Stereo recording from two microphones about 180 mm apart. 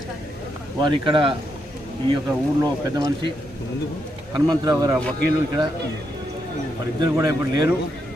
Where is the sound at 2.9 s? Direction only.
20° right (ahead or behind).